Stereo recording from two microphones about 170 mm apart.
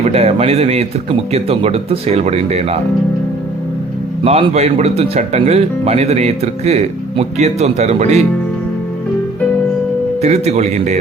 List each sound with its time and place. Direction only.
0.0 s speech: 40° right (ahead or behind)
4.2 s speech: 35° right (ahead or behind)
10.2 s speech: 40° right (ahead or behind)